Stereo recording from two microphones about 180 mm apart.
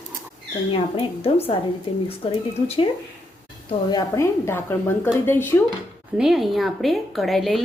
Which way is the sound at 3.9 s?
15° left (ahead or behind).